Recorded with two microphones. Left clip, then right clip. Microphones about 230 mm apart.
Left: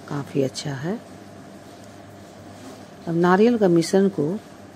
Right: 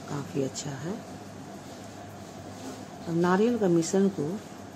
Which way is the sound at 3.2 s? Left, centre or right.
Left.